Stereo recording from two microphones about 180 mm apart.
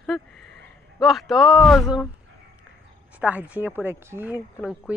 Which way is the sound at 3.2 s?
10° right (ahead or behind).